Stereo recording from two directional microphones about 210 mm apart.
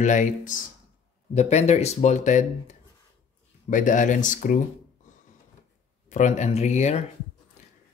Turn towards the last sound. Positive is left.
turn(degrees=30)  # may be behind; listen again after turning